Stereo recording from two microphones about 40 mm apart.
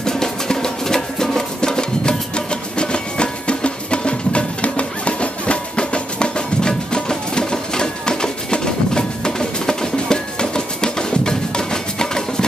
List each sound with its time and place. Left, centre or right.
0.0 s music: centre